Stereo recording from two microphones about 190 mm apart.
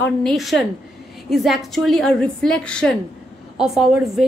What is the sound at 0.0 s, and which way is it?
A woman's voice, centre (ahead or behind).